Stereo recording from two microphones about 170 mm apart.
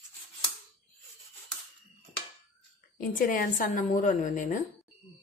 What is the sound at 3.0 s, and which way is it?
A woman's voice, 55° left (ahead or behind).